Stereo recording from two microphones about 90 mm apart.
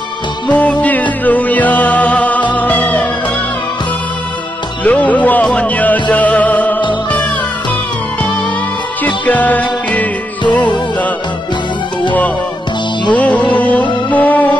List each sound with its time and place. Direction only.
0.5 s music: 15° left (ahead or behind)
4.8 s music: 15° left (ahead or behind)
9.0 s music: 20° left (ahead or behind)
13.1 s music: 15° left (ahead or behind)